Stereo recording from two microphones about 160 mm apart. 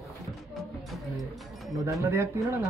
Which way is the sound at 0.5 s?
Centre (ahead or behind).